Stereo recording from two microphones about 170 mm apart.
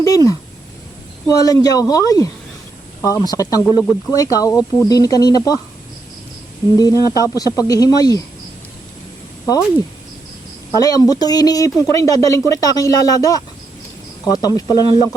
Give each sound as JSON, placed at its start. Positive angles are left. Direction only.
{"t": 0.0, "sound": "speech", "side_deg": 20}
{"t": 3.8, "sound": "speech", "side_deg": 0}
{"t": 4.1, "sound": "speech", "side_deg": 20}
{"t": 6.7, "sound": "speech", "side_deg": 20}
{"t": 10.8, "sound": "speech", "side_deg": 20}